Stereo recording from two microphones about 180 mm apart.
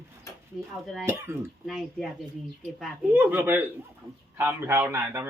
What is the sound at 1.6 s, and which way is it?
Speech, centre (ahead or behind).